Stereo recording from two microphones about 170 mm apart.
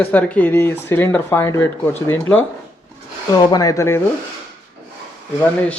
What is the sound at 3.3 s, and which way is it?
Speech, 25° left (ahead or behind).